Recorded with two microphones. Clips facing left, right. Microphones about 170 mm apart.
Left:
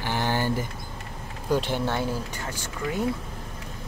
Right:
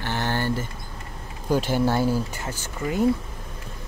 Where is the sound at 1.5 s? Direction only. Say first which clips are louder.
Right 4 dB; 5° right (ahead or behind).